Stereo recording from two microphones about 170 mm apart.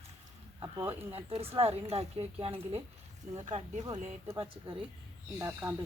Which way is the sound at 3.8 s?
20° right (ahead or behind).